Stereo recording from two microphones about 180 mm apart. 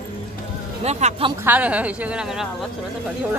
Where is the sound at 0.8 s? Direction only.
35° right (ahead or behind).